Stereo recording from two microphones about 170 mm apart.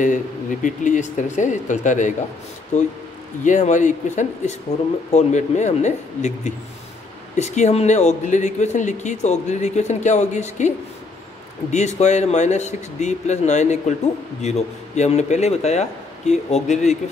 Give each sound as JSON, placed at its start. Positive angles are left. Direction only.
{"t": 0.0, "sound": "speech", "side_deg": 50}
{"t": 11.7, "sound": "speech", "side_deg": 40}